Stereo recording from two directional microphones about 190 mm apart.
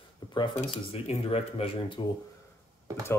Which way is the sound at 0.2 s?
20° left (ahead or behind).